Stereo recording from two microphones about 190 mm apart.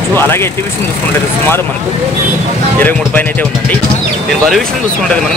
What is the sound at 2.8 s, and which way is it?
Speech, 10° left (ahead or behind).